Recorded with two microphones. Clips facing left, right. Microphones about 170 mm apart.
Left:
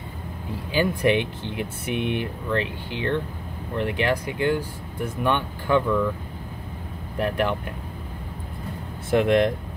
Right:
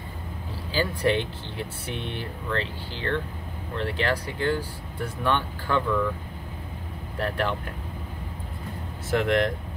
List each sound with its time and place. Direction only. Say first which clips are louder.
0.7 s speech: left 3 dB; 15° left (ahead or behind)
7.2 s speech: left 4 dB; 15° left (ahead or behind)
9.1 s speech: left 4 dB; 20° left (ahead or behind)